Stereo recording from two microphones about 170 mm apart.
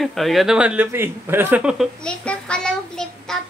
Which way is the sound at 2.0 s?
5° left (ahead or behind).